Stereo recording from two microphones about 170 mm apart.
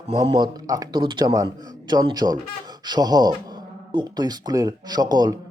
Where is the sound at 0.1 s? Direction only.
25° right (ahead or behind).